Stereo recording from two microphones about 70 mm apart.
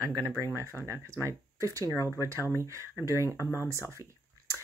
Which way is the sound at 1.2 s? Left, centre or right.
Right.